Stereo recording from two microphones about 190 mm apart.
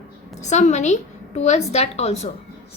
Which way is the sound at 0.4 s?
40° left (ahead or behind).